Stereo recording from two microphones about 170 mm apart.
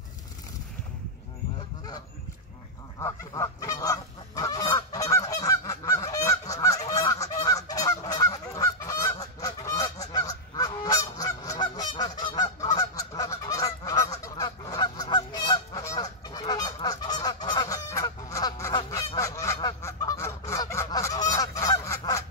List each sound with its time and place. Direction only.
3.0 s goose: 20° left (ahead or behind)
17.8 s honk: 20° left (ahead or behind)
19.1 s goose: 20° left (ahead or behind)